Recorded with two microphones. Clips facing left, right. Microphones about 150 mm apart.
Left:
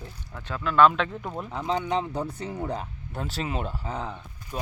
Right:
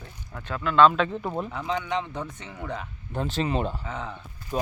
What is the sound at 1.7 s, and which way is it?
Speech, 35° left (ahead or behind).